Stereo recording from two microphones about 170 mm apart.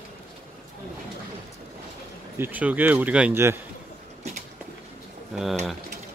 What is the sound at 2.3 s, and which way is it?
Speech, 10° right (ahead or behind).